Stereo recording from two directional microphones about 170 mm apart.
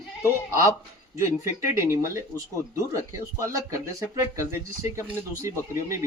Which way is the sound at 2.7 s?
20° right (ahead or behind).